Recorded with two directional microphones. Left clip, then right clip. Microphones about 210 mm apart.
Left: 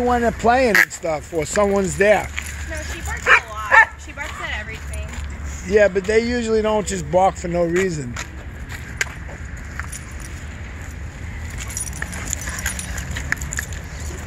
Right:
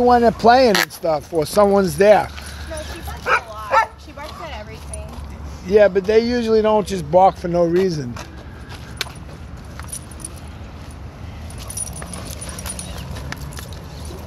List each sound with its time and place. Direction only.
0.0 s speech: 30° right (ahead or behind)
3.3 s dog: 5° left (ahead or behind)
5.7 s speech: 5° right (ahead or behind)